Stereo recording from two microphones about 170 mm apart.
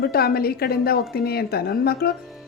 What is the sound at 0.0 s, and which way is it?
A woman's voice, 65° left (ahead or behind).